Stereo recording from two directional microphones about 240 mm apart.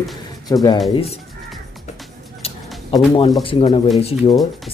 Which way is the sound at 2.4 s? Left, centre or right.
Left.